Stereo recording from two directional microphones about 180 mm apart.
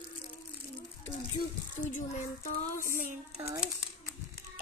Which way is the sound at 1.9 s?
50° left (ahead or behind).